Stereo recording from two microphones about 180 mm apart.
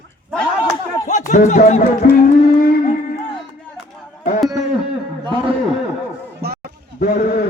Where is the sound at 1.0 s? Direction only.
45° left (ahead or behind).